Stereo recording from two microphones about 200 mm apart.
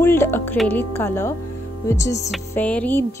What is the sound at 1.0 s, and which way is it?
Music, 10° left (ahead or behind).